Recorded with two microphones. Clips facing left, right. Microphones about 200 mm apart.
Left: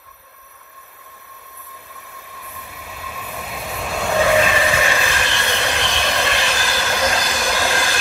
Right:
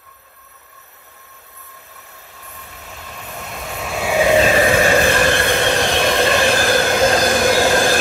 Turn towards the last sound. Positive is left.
turn(degrees=-50)  # may be behind; listen again after turning